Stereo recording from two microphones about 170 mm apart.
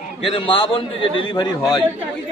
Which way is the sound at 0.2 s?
30° left (ahead or behind).